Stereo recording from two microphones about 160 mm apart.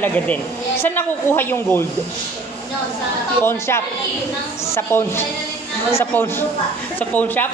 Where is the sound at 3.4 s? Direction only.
15° left (ahead or behind).